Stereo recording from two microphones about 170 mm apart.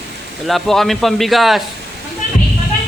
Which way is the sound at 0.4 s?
Centre (ahead or behind).